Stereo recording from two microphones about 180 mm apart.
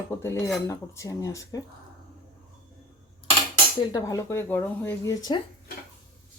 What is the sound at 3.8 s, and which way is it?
Speech, 20° left (ahead or behind).